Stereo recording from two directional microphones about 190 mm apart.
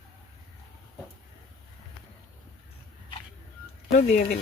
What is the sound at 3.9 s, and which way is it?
Speech, 40° left (ahead or behind).